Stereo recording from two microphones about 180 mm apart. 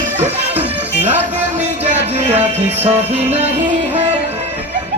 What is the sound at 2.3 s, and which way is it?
Music, 10° right (ahead or behind).